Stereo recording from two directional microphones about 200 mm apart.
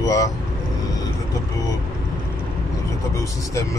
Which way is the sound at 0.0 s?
15° left (ahead or behind).